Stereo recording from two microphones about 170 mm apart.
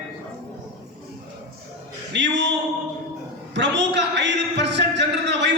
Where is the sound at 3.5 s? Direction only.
90° right.